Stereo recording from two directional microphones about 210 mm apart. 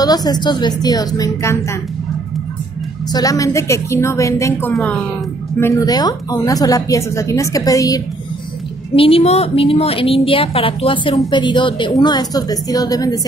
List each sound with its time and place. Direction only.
0.0 s a woman's voice: 20° left (ahead or behind)
3.1 s speech: 15° left (ahead or behind)
8.9 s a woman's voice: 25° left (ahead or behind)